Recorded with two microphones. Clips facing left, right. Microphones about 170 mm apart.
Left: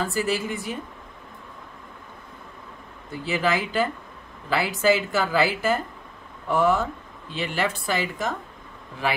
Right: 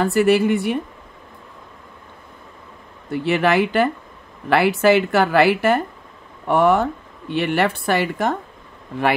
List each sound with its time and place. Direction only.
0.0 s speech: 65° right (ahead or behind)
3.1 s speech: 65° right (ahead or behind)